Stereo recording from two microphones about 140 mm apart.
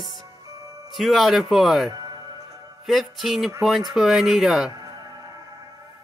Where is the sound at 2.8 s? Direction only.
Centre (ahead or behind).